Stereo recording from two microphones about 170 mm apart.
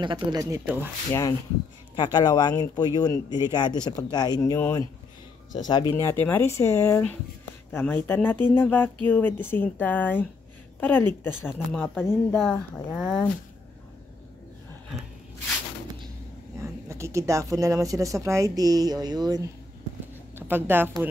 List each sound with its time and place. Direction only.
0.0 s speech: 25° right (ahead or behind)
2.0 s speech: 25° left (ahead or behind); by 13.2 s centre (ahead or behind)
16.5 s speech: 15° right (ahead or behind)
20.3 s a woman's voice: 10° right (ahead or behind)